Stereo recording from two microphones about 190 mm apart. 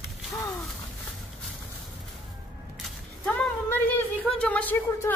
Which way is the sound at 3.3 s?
10° left (ahead or behind).